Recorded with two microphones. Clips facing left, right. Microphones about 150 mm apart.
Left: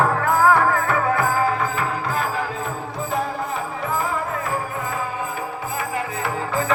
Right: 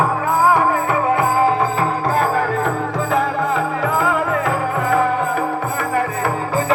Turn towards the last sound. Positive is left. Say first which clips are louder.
# right 4 dB
turn(degrees=-40)  # may be behind; listen again after turning